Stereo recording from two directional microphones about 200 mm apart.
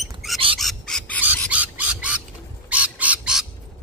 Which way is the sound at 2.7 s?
5° right (ahead or behind).